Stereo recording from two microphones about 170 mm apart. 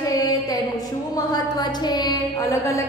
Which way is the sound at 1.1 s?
25° left (ahead or behind).